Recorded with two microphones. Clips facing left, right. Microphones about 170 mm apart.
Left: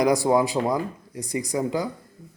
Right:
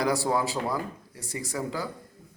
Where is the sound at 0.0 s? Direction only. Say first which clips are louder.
Left 6 dB; 15° left (ahead or behind).